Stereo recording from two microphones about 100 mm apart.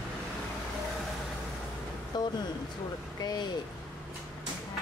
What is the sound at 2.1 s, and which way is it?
Speech, 45° left (ahead or behind).